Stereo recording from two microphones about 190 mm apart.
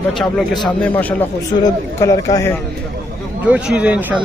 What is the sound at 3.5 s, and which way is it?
Speech, 5° right (ahead or behind).